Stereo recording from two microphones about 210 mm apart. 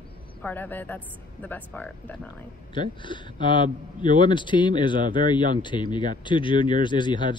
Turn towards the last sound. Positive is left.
turn(degrees=20)  # may be behind; listen again after turning